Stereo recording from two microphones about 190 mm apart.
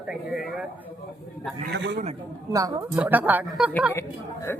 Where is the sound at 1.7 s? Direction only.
65° right (ahead or behind).